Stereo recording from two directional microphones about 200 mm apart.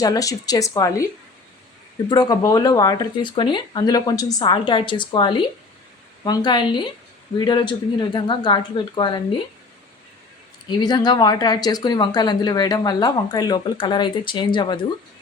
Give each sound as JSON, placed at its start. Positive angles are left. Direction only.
{"t": 0.0, "sound": "speech", "side_deg": 20}
{"t": 2.0, "sound": "speech", "side_deg": 20}
{"t": 10.7, "sound": "speech", "side_deg": 20}